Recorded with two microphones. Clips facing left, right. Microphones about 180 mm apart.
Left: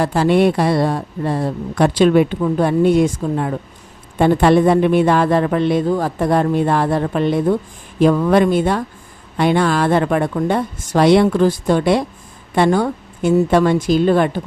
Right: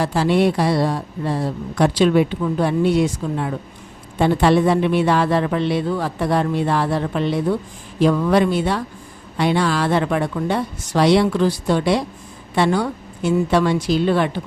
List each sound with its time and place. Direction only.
0.0 s a woman's voice: 50° left (ahead or behind)